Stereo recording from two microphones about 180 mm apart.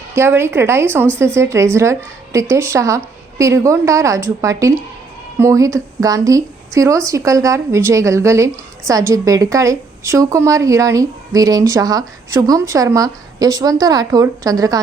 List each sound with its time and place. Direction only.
0.1 s a woman's voice: 15° right (ahead or behind)